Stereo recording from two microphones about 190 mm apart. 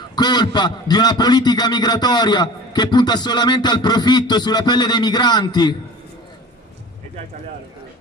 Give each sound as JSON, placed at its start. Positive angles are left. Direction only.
{"t": 0.1, "sound": "a man's voice", "side_deg": 20}